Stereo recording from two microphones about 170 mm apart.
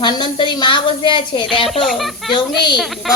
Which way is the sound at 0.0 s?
30° left (ahead or behind).